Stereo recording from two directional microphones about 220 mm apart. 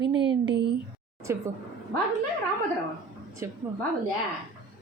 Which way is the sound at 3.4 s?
10° right (ahead or behind).